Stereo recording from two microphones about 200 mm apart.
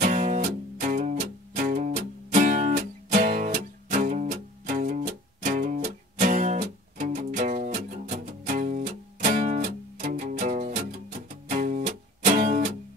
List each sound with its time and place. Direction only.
0.0 s music: 40° right (ahead or behind)